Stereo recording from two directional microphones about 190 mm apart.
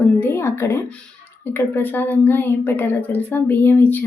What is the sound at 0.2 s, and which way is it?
A woman's voice, 10° left (ahead or behind).